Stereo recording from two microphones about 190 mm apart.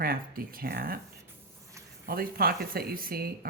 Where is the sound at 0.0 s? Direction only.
50° right (ahead or behind).